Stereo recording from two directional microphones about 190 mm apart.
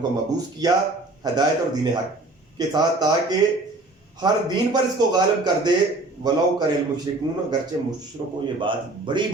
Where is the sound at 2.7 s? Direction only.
20° right (ahead or behind).